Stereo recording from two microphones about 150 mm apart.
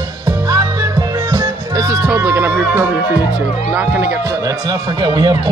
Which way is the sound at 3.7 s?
15° right (ahead or behind).